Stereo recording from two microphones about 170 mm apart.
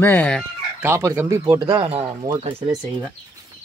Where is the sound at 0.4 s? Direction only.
10° right (ahead or behind).